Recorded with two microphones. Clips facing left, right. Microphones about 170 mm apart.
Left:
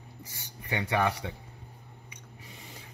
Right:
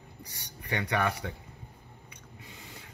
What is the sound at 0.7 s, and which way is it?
Speech, 25° left (ahead or behind).